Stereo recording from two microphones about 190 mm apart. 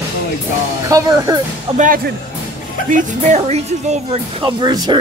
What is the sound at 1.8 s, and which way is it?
Speech, 50° right (ahead or behind).